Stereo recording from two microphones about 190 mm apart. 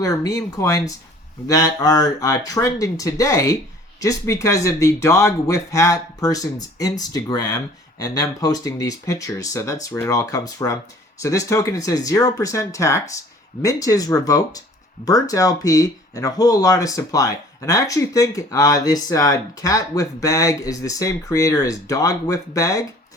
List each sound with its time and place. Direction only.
0.0 s speech: 20° left (ahead or behind)